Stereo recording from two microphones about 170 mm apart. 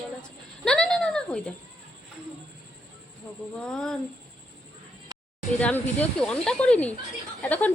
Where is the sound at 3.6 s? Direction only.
5° left (ahead or behind).